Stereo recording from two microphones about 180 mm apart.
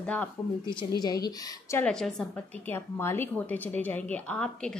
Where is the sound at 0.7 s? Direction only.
25° left (ahead or behind).